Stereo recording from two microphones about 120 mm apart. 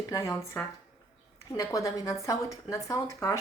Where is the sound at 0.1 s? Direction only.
25° left (ahead or behind).